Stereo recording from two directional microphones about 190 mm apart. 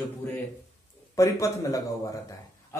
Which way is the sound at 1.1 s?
15° left (ahead or behind).